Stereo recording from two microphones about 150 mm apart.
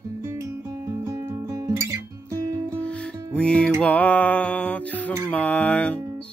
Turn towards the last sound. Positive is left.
turn(degrees=10)  # may be behind; listen again after turning